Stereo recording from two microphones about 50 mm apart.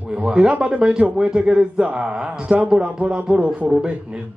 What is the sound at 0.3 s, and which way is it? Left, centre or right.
A man's voice, right.